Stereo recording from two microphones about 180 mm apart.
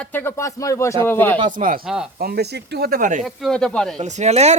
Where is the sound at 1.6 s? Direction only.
50° right (ahead or behind).